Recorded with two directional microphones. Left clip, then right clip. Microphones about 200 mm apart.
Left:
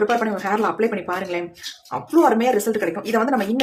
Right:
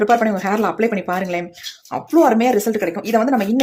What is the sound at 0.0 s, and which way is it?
A woman's voice, 30° right (ahead or behind).